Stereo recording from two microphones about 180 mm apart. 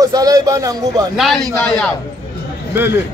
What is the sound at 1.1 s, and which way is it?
Speech, centre (ahead or behind).